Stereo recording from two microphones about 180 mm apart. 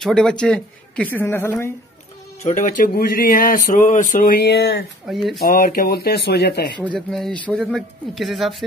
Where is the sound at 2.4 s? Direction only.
45° left (ahead or behind); by 4.9 s 70° left (ahead or behind).